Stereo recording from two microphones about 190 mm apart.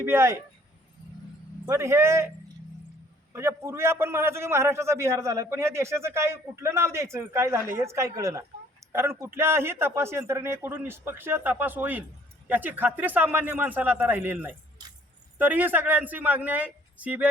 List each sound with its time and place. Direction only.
0.0 s a man's voice: 15° right (ahead or behind)
1.6 s a man's voice: 15° right (ahead or behind)
3.3 s a man's voice: 15° right (ahead or behind)